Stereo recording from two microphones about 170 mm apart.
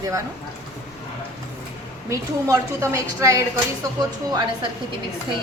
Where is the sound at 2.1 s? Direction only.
15° right (ahead or behind).